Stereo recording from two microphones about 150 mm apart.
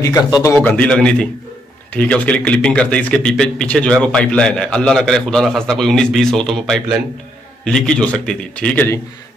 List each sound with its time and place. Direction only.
0.0 s a man's voice: 20° left (ahead or behind)
0.6 s a man's voice: 10° left (ahead or behind)